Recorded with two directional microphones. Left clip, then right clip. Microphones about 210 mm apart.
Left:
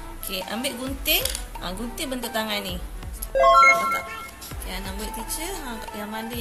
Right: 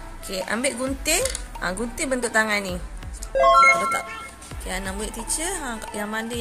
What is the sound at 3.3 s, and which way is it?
Speech, centre (ahead or behind).